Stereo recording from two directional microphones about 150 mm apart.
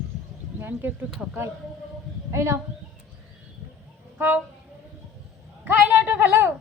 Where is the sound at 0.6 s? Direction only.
15° right (ahead or behind).